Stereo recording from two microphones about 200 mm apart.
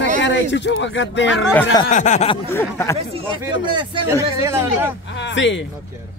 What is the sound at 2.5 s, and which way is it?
Speech, 10° left (ahead or behind).